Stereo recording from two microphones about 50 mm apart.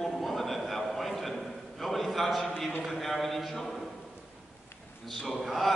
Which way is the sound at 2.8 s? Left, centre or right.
Centre.